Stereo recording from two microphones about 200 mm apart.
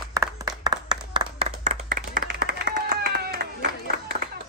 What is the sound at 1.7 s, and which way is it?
Clapping, 45° right (ahead or behind).